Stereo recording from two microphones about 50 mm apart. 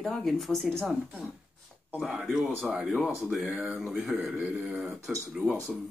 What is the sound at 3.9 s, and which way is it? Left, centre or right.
Speech, centre.